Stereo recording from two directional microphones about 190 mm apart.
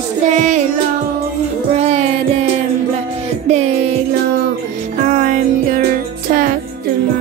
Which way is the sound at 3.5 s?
35° right (ahead or behind).